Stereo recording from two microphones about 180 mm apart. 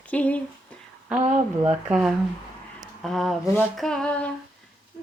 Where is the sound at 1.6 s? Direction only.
5° right (ahead or behind).